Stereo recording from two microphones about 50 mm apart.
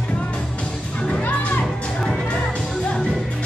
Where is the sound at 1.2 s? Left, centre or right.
Left.